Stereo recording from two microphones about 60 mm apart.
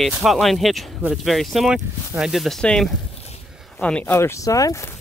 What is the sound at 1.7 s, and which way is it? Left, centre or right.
Speech, centre.